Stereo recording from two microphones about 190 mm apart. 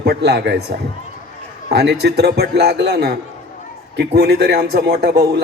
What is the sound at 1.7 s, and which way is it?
A man's voice, 60° right (ahead or behind).